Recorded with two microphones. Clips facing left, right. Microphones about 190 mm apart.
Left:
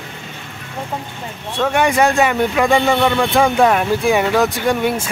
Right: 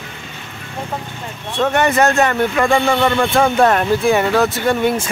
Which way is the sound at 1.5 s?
10° left (ahead or behind).